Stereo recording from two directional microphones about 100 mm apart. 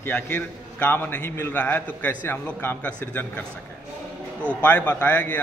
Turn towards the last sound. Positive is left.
turn(degrees=15)  # may be behind; listen again after turning